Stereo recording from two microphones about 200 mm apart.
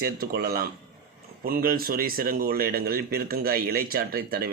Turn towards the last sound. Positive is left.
turn(degrees=-50)  # may be behind; listen again after turning